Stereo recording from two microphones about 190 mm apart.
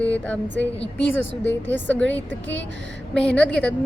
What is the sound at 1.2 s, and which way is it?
Speech, 75° left (ahead or behind).